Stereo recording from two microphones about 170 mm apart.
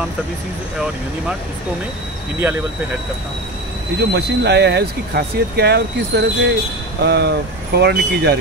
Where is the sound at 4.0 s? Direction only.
70° right (ahead or behind).